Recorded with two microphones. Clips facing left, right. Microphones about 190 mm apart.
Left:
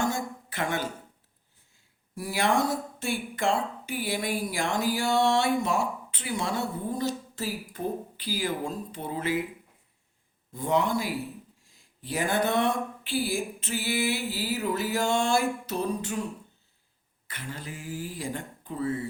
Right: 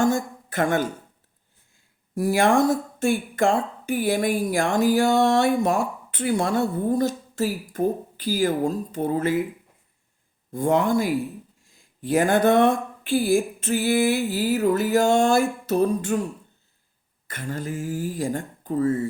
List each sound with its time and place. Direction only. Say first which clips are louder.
0.0 s a sound: right 8 dB; 45° right (ahead or behind)
2.1 s speech: right 7 dB; 50° right (ahead or behind)
10.5 s speech: right 6 dB; 50° right (ahead or behind)
17.2 s speech: right 9 dB; 45° right (ahead or behind)